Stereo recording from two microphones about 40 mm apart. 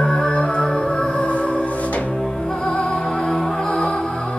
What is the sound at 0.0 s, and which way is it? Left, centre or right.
Music, centre.